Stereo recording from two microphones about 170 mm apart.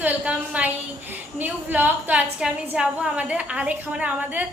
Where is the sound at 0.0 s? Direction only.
10° right (ahead or behind).